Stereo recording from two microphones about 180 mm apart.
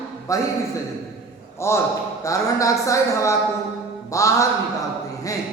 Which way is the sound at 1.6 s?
15° left (ahead or behind).